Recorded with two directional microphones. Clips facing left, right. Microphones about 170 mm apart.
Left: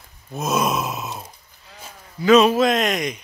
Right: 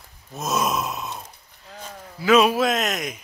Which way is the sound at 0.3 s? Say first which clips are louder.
Left 3 dB; centre (ahead or behind).